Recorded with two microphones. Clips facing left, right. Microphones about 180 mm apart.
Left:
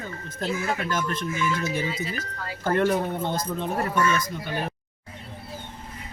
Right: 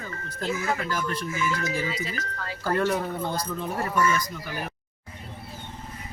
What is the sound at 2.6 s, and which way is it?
Speech, 25° left (ahead or behind).